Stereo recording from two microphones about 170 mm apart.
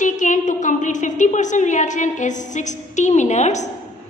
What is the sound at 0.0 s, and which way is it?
A woman's voice, 45° left (ahead or behind).